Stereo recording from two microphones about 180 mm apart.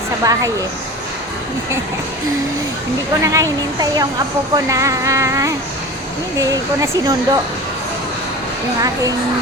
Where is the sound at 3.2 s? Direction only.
20° right (ahead or behind).